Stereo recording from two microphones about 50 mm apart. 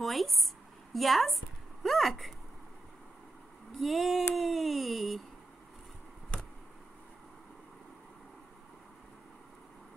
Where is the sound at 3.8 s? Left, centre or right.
Centre.